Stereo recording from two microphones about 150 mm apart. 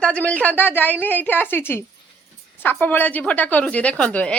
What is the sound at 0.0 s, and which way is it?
A woman's voice, 10° left (ahead or behind).